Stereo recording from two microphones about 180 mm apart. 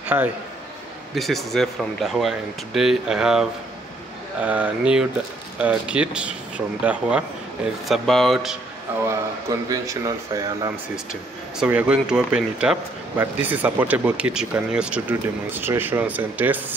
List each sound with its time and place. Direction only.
0.0 s a man's voice: 10° right (ahead or behind)
1.1 s speech: centre (ahead or behind)
4.5 s speech: 5° right (ahead or behind)
9.1 s speech: 20° right (ahead or behind)
11.6 s speech: 5° right (ahead or behind)